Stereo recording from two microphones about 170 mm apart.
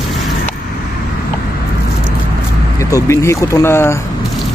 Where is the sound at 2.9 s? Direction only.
15° left (ahead or behind).